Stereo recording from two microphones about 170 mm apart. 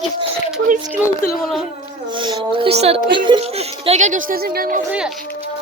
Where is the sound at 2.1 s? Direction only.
30° right (ahead or behind); by 4.8 s 60° right (ahead or behind).